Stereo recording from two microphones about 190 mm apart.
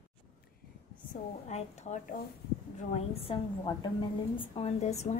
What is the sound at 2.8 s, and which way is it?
A woman's voice, 35° left (ahead or behind).